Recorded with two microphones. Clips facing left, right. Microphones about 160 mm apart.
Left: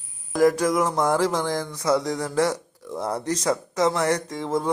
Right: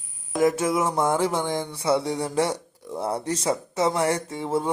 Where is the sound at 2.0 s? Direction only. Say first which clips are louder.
Even; 30° right (ahead or behind).